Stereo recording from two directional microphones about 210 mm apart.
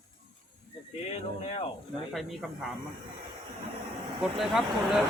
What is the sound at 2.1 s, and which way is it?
Speech, centre (ahead or behind).